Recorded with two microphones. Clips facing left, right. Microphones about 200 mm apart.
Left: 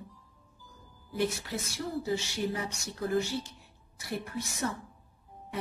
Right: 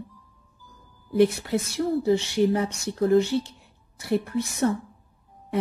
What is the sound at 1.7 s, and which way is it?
Speech, 65° right (ahead or behind).